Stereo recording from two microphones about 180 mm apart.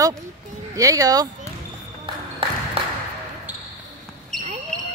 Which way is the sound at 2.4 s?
30° right (ahead or behind).